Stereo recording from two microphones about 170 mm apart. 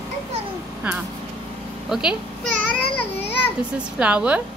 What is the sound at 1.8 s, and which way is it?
Speech, 5° right (ahead or behind).